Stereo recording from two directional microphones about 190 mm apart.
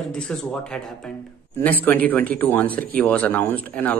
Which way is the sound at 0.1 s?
5° left (ahead or behind).